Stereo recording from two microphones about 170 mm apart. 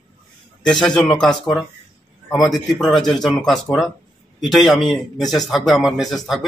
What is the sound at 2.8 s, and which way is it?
A man's voice, centre (ahead or behind).